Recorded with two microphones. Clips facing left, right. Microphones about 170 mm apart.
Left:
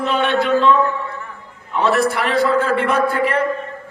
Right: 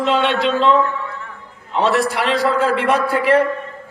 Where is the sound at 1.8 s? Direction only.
75° right (ahead or behind).